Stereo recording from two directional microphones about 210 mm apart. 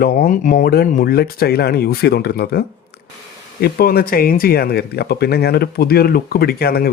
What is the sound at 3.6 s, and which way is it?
Speech, 45° left (ahead or behind).